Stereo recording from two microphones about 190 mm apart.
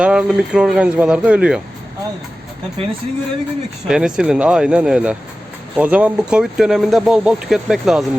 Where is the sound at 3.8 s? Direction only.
5° right (ahead or behind).